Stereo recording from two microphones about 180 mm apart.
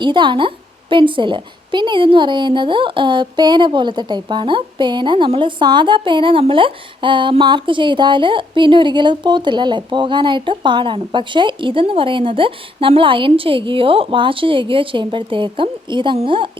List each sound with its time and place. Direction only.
0.0 s a woman's voice: 25° right (ahead or behind)